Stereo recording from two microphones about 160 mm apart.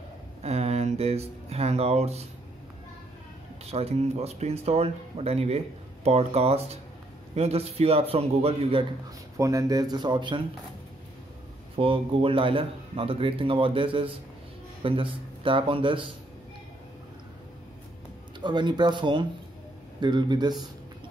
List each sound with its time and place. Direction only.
0.4 s a sound: 40° right (ahead or behind)
3.7 s speech: 40° right (ahead or behind)
9.4 s speech: 20° right (ahead or behind)
11.7 s a man's voice: 35° right (ahead or behind)
18.4 s speech: 30° right (ahead or behind)